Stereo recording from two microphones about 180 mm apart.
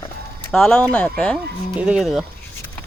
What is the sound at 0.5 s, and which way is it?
Speech, centre (ahead or behind).